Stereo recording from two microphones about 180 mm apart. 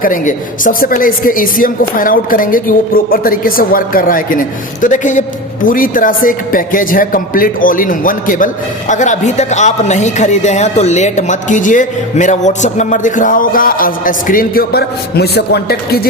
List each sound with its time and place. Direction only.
0.0 s a man's voice: 50° left (ahead or behind)